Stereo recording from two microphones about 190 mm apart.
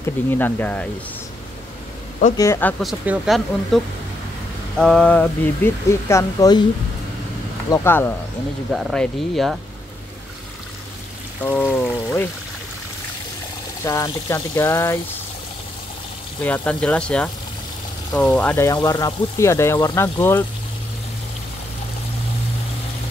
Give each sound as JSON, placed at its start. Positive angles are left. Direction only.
{"t": 0.3, "sound": "speech", "side_deg": 10}
{"t": 2.3, "sound": "speech", "side_deg": 15}
{"t": 2.8, "sound": "speech", "side_deg": 0}
{"t": 7.7, "sound": "speech", "side_deg": 10}
{"t": 11.4, "sound": "speech", "side_deg": 10}
{"t": 13.8, "sound": "speech", "side_deg": 15}
{"t": 16.3, "sound": "speech", "side_deg": 10}